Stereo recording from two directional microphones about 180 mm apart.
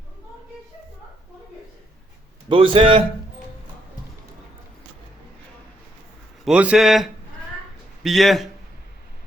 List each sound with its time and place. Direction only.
2.5 s a man's voice: 30° right (ahead or behind)
6.4 s a man's voice: 5° right (ahead or behind)